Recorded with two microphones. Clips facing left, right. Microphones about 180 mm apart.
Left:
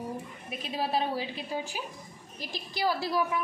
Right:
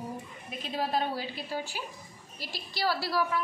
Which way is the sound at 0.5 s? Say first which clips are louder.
Even; 10° left (ahead or behind).